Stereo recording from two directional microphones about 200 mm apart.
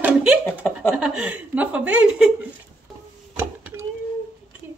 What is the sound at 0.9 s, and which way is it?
A woman's voice, 5° right (ahead or behind).